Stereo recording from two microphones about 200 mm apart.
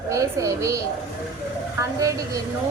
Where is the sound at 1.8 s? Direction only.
15° right (ahead or behind).